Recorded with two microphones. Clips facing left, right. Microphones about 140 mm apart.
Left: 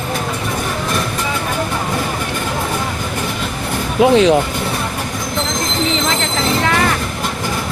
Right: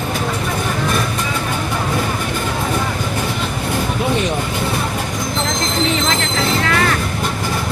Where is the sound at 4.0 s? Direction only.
90° left.